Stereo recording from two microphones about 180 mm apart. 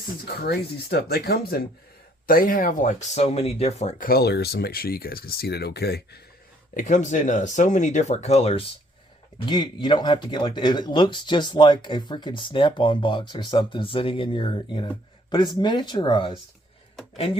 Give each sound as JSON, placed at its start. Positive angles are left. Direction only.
{"t": 0.3, "sound": "speech", "side_deg": 60}
{"t": 3.2, "sound": "speech", "side_deg": 35}
{"t": 6.7, "sound": "speech", "side_deg": 45}